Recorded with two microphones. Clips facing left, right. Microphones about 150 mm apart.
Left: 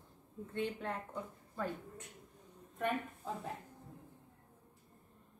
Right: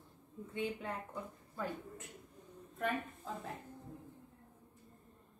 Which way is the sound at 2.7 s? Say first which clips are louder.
Left 1 dB; 10° left (ahead or behind).